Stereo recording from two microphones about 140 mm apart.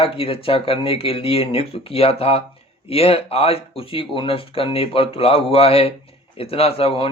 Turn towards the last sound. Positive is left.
turn(degrees=40)  # may be behind; listen again after turning